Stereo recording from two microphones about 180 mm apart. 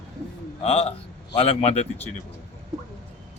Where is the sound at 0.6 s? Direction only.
35° left (ahead or behind).